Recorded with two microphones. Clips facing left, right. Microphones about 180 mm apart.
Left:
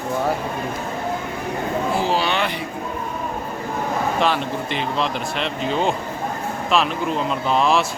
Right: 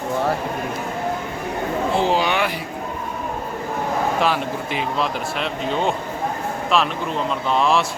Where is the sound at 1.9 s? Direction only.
20° right (ahead or behind).